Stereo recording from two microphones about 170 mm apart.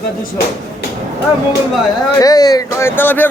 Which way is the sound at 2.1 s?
20° left (ahead or behind).